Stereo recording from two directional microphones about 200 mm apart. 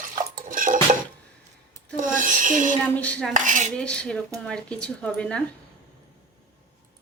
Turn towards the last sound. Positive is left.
turn(degrees=5)  # may be behind; listen again after turning